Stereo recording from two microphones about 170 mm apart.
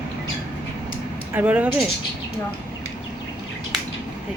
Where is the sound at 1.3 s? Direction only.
10° right (ahead or behind).